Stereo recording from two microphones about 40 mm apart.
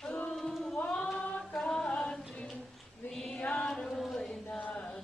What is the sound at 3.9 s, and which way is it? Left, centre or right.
Chant, centre.